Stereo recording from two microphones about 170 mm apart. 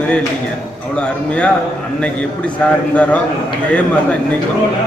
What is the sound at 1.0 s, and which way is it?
Speech, 5° left (ahead or behind).